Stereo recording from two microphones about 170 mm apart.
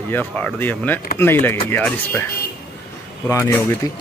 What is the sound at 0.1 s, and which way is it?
Speech, 10° left (ahead or behind).